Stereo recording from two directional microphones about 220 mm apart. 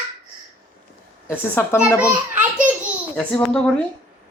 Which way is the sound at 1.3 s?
10° left (ahead or behind).